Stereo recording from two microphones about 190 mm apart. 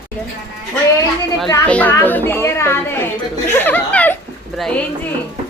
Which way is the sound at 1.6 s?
5° left (ahead or behind).